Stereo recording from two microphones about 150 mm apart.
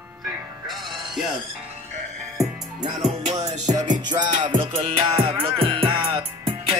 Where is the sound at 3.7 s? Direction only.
25° right (ahead or behind).